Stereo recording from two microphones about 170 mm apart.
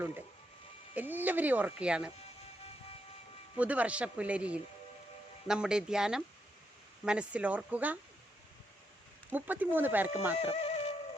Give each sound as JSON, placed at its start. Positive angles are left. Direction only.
{"t": 0.9, "sound": "speech", "side_deg": -10}
{"t": 3.6, "sound": "speech", "side_deg": -10}
{"t": 9.3, "sound": "speech", "side_deg": -10}
{"t": 10.3, "sound": "music", "side_deg": 35}